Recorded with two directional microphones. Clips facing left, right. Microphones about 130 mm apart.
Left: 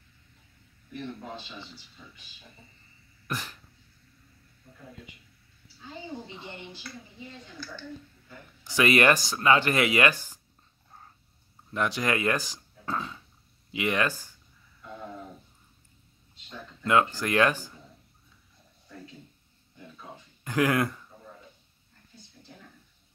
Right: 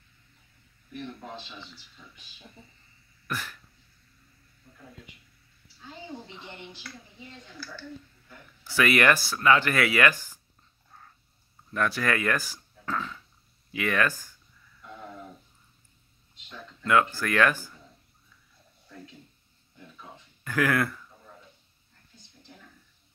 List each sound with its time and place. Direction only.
3.3 s cough: 20° left (ahead or behind)
6.3 s speech: 15° left (ahead or behind)
8.6 s speech: 20° left (ahead or behind)
10.9 s dog: 30° left (ahead or behind)
11.7 s speech: 15° left (ahead or behind)
16.4 s speech: 20° left (ahead or behind)
20.0 s speech: 20° left (ahead or behind)